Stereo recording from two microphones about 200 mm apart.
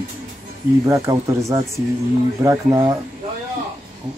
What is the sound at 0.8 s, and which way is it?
Speech, 15° right (ahead or behind).